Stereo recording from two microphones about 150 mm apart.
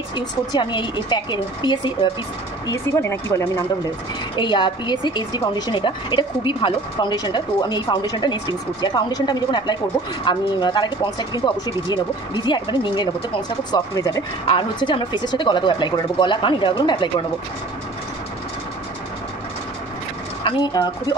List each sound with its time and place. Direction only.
0.1 s speech: 30° left (ahead or behind)
2.7 s a woman's voice: 20° left (ahead or behind)
4.4 s a woman's voice: 30° left (ahead or behind)
20.4 s a woman's voice: 30° left (ahead or behind)